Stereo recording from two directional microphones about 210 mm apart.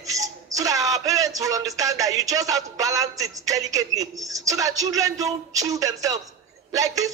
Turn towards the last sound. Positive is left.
turn(degrees=-15)  # may be behind; listen again after turning